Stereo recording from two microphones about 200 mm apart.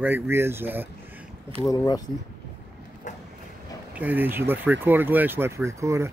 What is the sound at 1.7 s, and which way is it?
Speech, 20° left (ahead or behind).